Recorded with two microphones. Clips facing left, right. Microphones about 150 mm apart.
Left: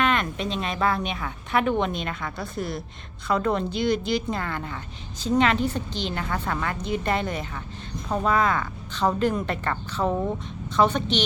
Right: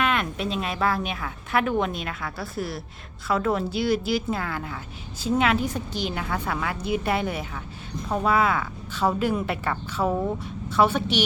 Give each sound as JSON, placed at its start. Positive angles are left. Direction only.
{"t": 0.0, "sound": "speech", "side_deg": -5}